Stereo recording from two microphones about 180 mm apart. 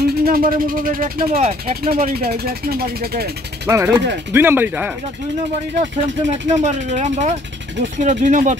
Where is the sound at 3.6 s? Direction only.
15° right (ahead or behind).